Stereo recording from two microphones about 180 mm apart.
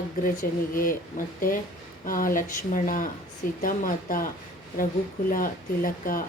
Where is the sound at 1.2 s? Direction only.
45° left (ahead or behind).